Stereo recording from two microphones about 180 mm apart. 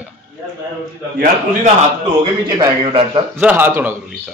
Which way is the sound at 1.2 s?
40° right (ahead or behind).